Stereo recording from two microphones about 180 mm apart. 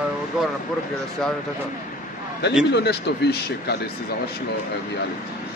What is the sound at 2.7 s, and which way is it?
Speech, 65° left (ahead or behind).